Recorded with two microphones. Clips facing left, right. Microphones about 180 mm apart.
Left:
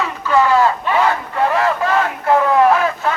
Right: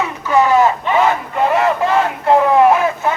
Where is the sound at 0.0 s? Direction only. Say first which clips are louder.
Right 1 dB; 15° right (ahead or behind).